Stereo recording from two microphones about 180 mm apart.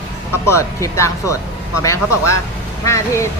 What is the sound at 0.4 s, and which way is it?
Speech, 15° left (ahead or behind).